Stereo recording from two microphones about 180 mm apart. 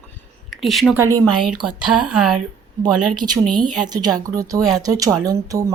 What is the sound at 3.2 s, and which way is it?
Speech, 25° right (ahead or behind).